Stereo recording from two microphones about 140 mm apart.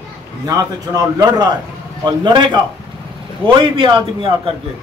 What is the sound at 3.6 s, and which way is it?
Speech, 35° right (ahead or behind).